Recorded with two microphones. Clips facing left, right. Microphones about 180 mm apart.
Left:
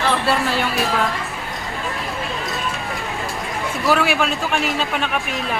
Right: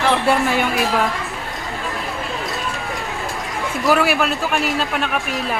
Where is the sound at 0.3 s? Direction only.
15° right (ahead or behind).